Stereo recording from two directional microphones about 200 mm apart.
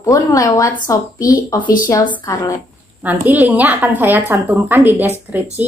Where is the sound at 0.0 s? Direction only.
15° left (ahead or behind).